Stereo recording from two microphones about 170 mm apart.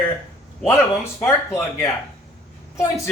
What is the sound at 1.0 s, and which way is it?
Speech, 15° left (ahead or behind).